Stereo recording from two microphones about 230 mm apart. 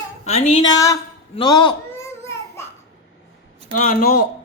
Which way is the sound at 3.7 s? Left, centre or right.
Left.